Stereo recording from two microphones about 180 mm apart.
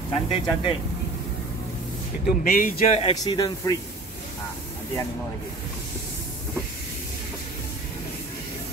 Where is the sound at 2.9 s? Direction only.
30° left (ahead or behind).